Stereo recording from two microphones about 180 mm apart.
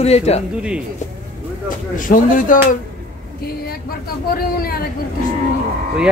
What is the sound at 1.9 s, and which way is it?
Speech, 50° left (ahead or behind).